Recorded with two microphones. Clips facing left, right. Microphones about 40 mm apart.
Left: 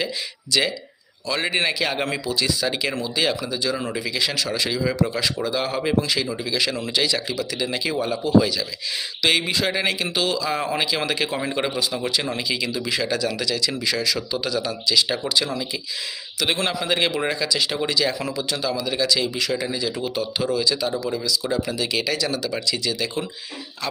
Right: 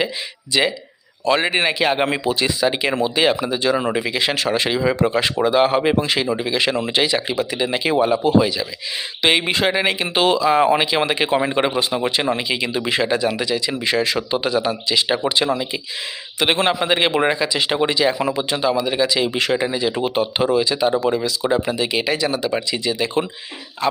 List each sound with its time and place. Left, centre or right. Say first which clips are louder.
0.5 s speech: right 3 dB; right
8.4 s speech: right 2 dB; right
19.3 s speech: right 5 dB; right
19.5 s speech: right 5 dB; right